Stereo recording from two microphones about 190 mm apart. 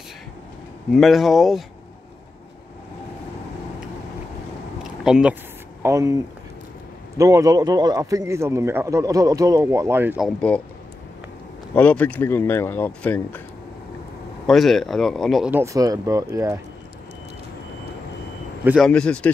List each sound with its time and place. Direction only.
0.9 s speech: centre (ahead or behind)
4.8 s a sound: 5° right (ahead or behind)
5.8 s a man's voice: 15° right (ahead or behind)
11.7 s speech: 10° left (ahead or behind)
14.4 s speech: centre (ahead or behind)
15.5 s a man's voice: 15° right (ahead or behind)
18.8 s speech: 5° left (ahead or behind)